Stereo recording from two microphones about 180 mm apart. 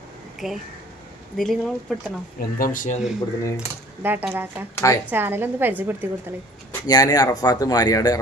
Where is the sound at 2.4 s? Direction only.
50° left (ahead or behind).